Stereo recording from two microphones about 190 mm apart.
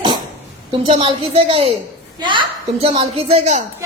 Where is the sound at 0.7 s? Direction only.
30° right (ahead or behind).